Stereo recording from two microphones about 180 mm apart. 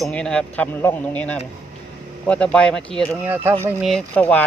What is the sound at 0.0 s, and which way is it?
Speech, 5° left (ahead or behind).